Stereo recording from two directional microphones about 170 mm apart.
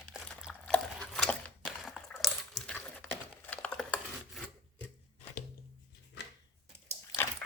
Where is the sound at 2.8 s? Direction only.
5° left (ahead or behind).